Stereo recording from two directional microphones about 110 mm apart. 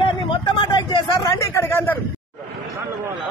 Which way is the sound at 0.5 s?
45° left (ahead or behind).